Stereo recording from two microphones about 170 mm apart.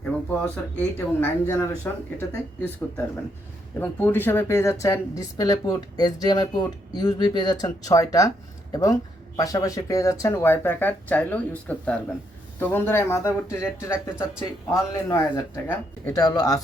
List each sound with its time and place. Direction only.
0.0 s speech: 5° left (ahead or behind)
3.8 s a woman's voice: 10° left (ahead or behind)